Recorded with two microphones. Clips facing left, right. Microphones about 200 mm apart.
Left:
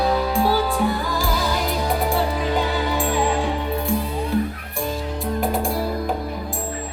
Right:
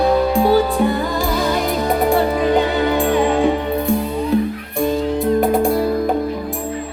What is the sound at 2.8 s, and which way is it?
Music, 55° right (ahead or behind).